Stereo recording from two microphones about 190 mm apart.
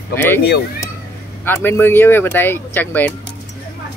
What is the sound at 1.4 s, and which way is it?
Speech, 10° left (ahead or behind).